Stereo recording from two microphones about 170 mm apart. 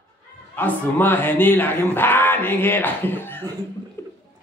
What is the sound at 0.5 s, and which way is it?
Speech, 10° left (ahead or behind).